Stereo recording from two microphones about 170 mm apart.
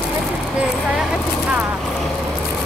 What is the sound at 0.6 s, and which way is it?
Speech, 5° right (ahead or behind).